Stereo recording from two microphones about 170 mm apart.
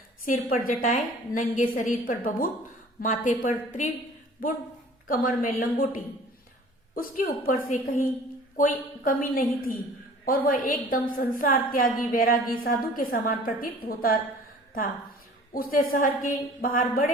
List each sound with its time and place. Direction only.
0.3 s a woman's voice: 55° left (ahead or behind)
5.0 s a woman's voice: 55° left (ahead or behind)
9.0 s a woman's voice: 55° left (ahead or behind)
15.5 s a woman's voice: 55° left (ahead or behind)